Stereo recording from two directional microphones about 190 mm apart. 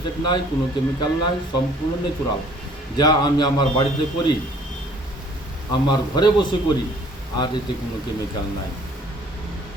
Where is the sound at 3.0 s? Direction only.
20° left (ahead or behind).